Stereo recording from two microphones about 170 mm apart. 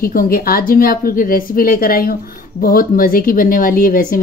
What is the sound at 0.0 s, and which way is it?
Speech, 60° left (ahead or behind).